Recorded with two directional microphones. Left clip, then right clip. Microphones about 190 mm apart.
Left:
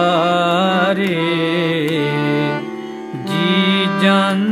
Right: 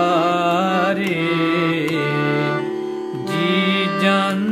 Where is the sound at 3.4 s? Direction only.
20° left (ahead or behind).